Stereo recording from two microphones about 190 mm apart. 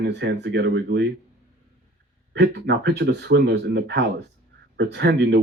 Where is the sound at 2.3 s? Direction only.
65° right (ahead or behind).